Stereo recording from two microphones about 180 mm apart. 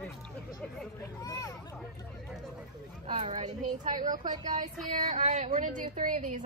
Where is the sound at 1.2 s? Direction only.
20° left (ahead or behind).